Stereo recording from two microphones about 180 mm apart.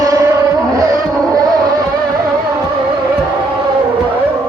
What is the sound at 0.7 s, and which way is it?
Vehicle, 20° right (ahead or behind).